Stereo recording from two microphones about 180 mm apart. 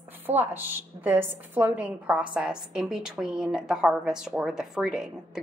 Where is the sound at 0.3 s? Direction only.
10° right (ahead or behind).